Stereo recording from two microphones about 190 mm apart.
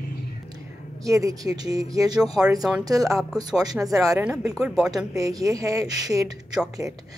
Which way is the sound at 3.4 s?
20° right (ahead or behind).